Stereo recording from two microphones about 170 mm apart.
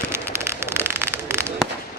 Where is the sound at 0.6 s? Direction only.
15° right (ahead or behind).